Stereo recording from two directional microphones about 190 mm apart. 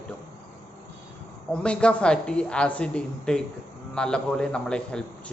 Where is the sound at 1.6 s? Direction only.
5° left (ahead or behind).